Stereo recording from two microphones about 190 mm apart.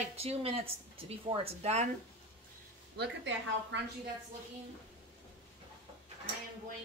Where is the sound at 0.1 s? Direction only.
30° right (ahead or behind).